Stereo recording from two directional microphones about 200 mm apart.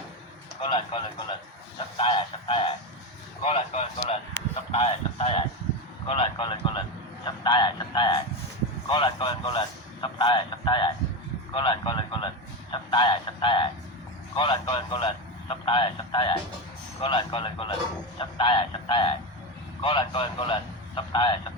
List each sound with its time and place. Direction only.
0.6 s a man's voice: 25° left (ahead or behind)
2.0 s a sound: 25° left (ahead or behind)
3.4 s a man's voice: 30° left (ahead or behind)